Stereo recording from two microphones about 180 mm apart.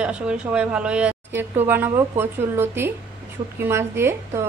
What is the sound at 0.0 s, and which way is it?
A woman's voice, 5° right (ahead or behind).